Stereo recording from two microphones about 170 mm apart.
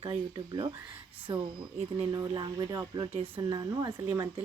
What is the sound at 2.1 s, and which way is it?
Speech, 25° right (ahead or behind).